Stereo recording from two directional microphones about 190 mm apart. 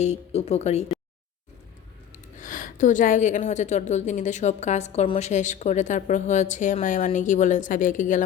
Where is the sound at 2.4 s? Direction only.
45° left (ahead or behind).